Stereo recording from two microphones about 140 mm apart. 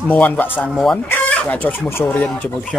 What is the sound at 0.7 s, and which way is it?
Speech, centre (ahead or behind).